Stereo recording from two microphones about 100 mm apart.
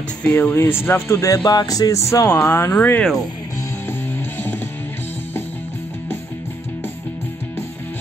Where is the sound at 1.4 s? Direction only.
45° left (ahead or behind); by 3.0 s 20° left (ahead or behind).